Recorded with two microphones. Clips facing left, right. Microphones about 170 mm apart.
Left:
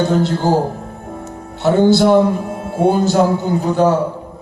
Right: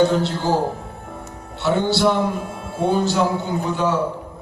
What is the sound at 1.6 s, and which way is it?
Music, 45° left (ahead or behind).